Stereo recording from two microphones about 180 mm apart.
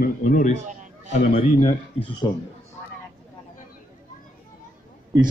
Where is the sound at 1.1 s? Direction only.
35° left (ahead or behind).